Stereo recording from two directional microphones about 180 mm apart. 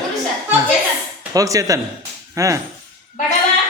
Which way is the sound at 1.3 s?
20° right (ahead or behind).